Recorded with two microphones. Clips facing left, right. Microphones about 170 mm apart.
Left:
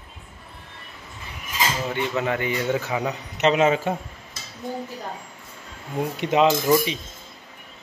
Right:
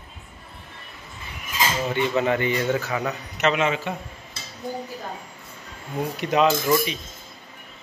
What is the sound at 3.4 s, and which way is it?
Speech, 35° left (ahead or behind).